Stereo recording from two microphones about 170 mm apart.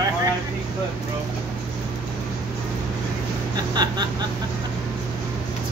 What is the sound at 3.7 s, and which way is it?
Speech, 25° right (ahead or behind).